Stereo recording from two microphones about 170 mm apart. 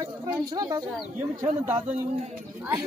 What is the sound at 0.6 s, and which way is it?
Speech, 20° right (ahead or behind).